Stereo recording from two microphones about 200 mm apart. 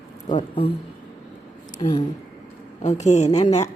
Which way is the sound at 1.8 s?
25° left (ahead or behind).